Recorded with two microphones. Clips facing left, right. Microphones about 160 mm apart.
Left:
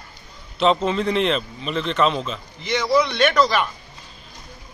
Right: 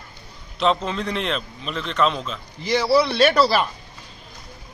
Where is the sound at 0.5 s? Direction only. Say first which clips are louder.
Left 3 dB; centre (ahead or behind).